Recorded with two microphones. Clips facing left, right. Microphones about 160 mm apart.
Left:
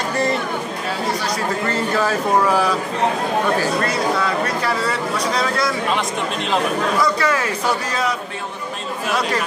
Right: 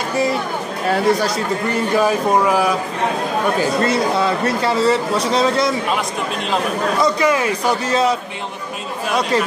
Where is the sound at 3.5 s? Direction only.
25° right (ahead or behind).